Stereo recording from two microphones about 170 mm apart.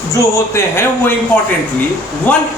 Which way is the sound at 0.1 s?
15° left (ahead or behind).